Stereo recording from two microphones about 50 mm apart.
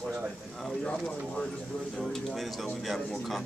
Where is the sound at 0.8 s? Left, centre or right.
Left.